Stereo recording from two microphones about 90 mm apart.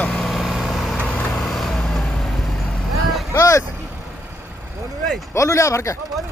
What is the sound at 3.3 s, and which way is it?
Speech, 35° left (ahead or behind).